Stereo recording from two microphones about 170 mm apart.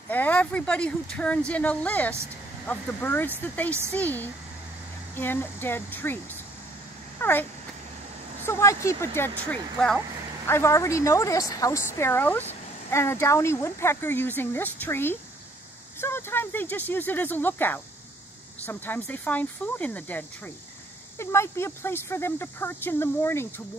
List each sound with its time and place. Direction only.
0.1 s speech: 10° left (ahead or behind)
8.5 s speech: 15° left (ahead or behind)
9.5 s speech: 5° left (ahead or behind)
10.4 s speech: 15° left (ahead or behind)